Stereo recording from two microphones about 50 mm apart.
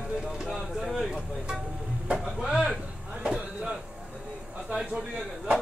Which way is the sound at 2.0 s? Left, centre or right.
Centre.